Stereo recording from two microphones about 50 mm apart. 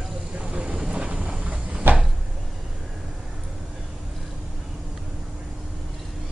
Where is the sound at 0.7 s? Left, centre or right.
Centre.